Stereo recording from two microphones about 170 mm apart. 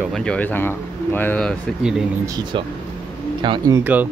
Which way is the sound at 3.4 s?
30° right (ahead or behind).